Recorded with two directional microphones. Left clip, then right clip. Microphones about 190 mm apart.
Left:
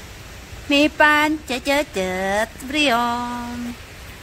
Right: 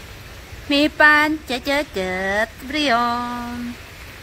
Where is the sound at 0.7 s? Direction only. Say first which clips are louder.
Right 1 dB; 10° left (ahead or behind).